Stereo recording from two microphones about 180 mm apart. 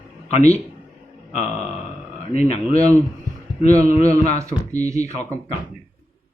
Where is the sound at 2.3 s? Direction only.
35° left (ahead or behind).